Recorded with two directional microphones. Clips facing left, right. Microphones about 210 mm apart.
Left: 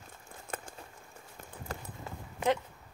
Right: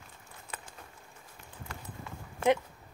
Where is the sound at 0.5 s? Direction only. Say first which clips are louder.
Left 5 dB; 50° left (ahead or behind).